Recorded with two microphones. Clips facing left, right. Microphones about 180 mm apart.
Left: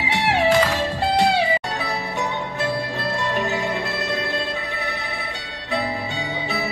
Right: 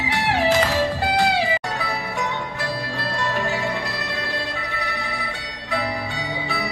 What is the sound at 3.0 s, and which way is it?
Music, 20° left (ahead or behind).